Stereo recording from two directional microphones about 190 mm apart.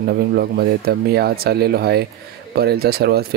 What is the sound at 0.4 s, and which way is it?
Speech, 55° right (ahead or behind).